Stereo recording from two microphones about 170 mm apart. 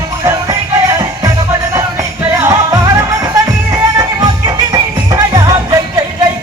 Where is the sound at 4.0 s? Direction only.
25° right (ahead or behind).